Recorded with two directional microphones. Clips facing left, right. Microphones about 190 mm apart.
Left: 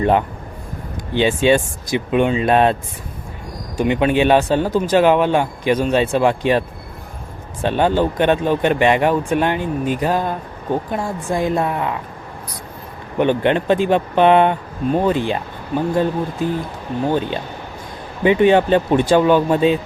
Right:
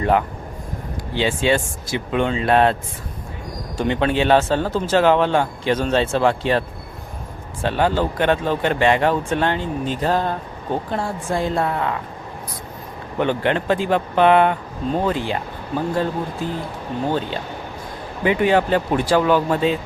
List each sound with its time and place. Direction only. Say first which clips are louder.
0.0 s speech: left 2 dB; 25° left (ahead or behind)
3.8 s speech: left 4 dB; 15° left (ahead or behind)
13.1 s speech: left 4 dB; 20° left (ahead or behind)
17.1 s speech: left 4 dB; 15° left (ahead or behind)